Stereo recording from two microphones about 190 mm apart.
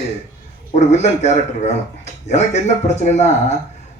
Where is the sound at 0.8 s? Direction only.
35° left (ahead or behind).